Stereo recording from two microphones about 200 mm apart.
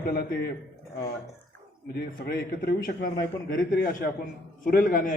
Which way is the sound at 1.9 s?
50° left (ahead or behind).